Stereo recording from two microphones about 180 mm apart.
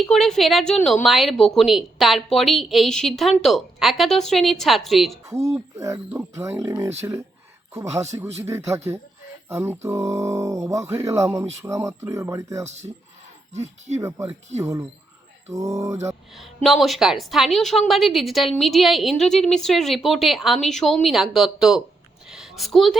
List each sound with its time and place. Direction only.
0.0 s a woman's voice: centre (ahead or behind)
5.5 s speech: 15° right (ahead or behind)
12.6 s speech: 40° right (ahead or behind)
14.0 s speech: 15° right (ahead or behind)
16.6 s a woman's voice: centre (ahead or behind)
22.3 s a sound: 5° right (ahead or behind)